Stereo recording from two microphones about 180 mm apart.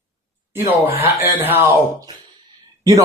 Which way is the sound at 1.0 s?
10° right (ahead or behind).